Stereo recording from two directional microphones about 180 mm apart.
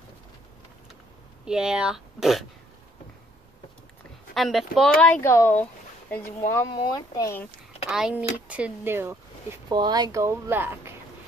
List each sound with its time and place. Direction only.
1.4 s speech: 5° right (ahead or behind)
4.3 s speech: centre (ahead or behind)
6.7 s speech: 20° left (ahead or behind)
7.9 s speech: 5° right (ahead or behind)
9.7 s speech: 25° right (ahead or behind)